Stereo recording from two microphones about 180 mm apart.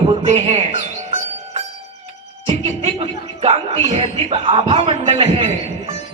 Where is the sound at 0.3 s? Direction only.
35° right (ahead or behind).